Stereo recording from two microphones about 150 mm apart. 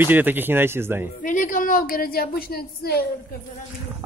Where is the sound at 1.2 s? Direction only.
60° left (ahead or behind); by 3.0 s 90° left.